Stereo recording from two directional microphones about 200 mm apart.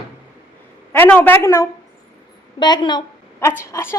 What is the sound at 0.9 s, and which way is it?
A woman's voice, 10° left (ahead or behind).